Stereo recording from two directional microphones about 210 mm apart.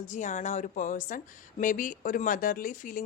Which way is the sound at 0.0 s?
35° left (ahead or behind).